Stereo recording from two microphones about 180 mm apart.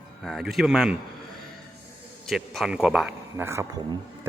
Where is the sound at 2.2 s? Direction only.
Centre (ahead or behind).